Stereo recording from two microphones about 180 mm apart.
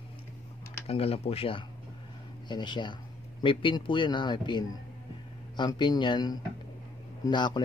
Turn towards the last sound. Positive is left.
turn(degrees=25)  # may be behind; listen again after turning